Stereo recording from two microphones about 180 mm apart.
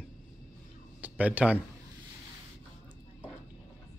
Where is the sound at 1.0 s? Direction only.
10° right (ahead or behind).